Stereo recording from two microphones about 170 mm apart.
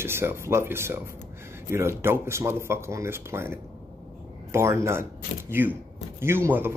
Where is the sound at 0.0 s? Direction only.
15° right (ahead or behind).